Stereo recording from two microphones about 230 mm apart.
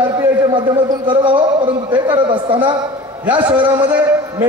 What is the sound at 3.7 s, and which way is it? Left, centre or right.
Speech, centre.